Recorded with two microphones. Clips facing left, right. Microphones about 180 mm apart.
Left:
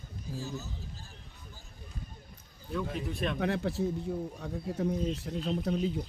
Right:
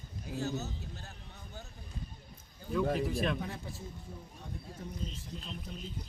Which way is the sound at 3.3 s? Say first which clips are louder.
Left 11 dB; 75° left (ahead or behind).